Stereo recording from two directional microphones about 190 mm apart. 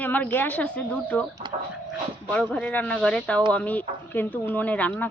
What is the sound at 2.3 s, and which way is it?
Speech, 5° left (ahead or behind).